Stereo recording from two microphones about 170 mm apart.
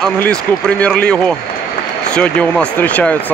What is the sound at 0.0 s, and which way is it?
Speech, 5° left (ahead or behind).